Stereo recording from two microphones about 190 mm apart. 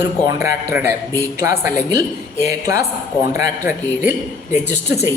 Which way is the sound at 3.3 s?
10° right (ahead or behind).